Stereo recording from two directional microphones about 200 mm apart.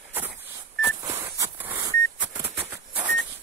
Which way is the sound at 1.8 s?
20° right (ahead or behind).